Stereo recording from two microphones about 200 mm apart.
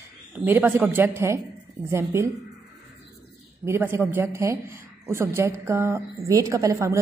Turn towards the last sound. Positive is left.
turn(degrees=-15)  # may be behind; listen again after turning